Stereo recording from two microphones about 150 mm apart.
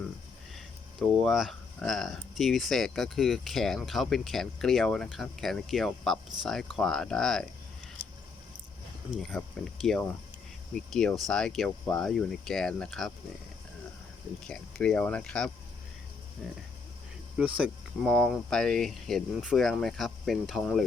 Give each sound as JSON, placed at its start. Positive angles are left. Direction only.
{"t": 0.5, "sound": "speech", "side_deg": 0}
{"t": 9.3, "sound": "speech", "side_deg": 0}
{"t": 11.3, "sound": "speech", "side_deg": 5}
{"t": 14.4, "sound": "speech", "side_deg": 5}
{"t": 17.3, "sound": "speech", "side_deg": -5}
{"t": 18.1, "sound": "speech", "side_deg": 5}